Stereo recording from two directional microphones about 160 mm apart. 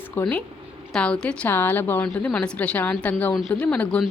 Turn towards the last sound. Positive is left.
turn(degrees=5)  # may be behind; listen again after turning